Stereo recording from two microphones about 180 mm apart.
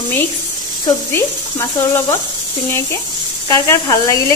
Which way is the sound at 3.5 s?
20° left (ahead or behind).